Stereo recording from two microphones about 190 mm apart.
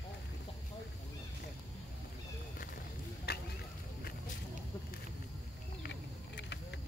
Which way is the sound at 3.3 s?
55° left (ahead or behind).